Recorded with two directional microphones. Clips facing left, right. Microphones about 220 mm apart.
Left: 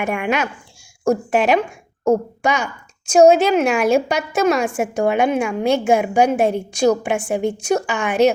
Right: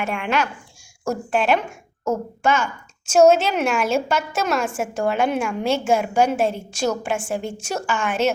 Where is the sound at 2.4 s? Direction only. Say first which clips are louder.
Even; 15° left (ahead or behind).